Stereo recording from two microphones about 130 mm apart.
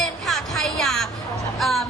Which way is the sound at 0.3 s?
Centre (ahead or behind).